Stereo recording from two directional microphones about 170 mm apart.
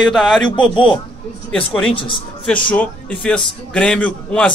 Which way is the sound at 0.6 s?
30° left (ahead or behind).